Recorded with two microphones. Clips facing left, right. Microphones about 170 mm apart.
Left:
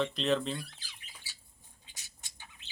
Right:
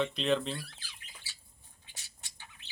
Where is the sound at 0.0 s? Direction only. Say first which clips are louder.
Even; centre (ahead or behind).